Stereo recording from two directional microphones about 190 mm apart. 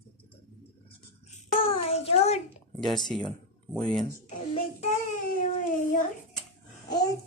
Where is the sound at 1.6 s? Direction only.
30° left (ahead or behind).